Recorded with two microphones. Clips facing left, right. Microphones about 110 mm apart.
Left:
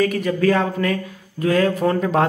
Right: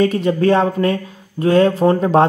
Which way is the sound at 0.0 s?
25° right (ahead or behind).